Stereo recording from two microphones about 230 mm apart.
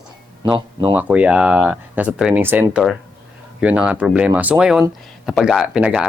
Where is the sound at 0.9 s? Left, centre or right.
Centre.